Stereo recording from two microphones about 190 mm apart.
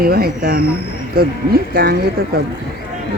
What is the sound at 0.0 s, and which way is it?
Speech, 55° right (ahead or behind).